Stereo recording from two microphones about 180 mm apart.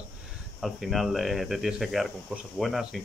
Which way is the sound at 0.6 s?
Centre (ahead or behind).